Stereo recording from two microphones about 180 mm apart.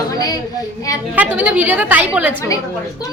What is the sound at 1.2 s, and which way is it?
Speech, 10° right (ahead or behind).